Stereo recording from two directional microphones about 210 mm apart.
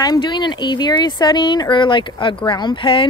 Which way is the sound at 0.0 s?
20° left (ahead or behind).